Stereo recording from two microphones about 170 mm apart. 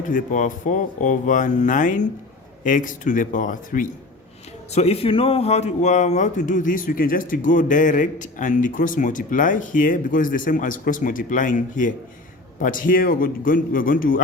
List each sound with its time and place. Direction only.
0.1 s speech: 50° left (ahead or behind)
4.7 s speech: 40° left (ahead or behind); by 14.2 s 55° left (ahead or behind)